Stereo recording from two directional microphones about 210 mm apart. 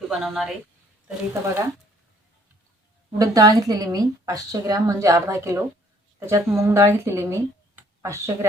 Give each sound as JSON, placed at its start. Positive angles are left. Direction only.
{"t": 0.1, "sound": "a woman's voice", "side_deg": 0}
{"t": 3.2, "sound": "a woman's voice", "side_deg": -15}